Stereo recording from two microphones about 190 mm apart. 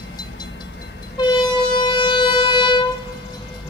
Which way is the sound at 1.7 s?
25° left (ahead or behind).